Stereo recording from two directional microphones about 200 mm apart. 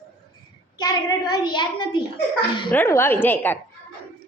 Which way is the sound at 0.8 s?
20° left (ahead or behind).